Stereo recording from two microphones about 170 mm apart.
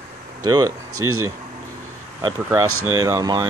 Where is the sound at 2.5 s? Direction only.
15° right (ahead or behind).